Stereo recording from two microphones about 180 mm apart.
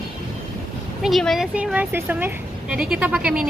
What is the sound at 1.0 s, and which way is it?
Speech, centre (ahead or behind).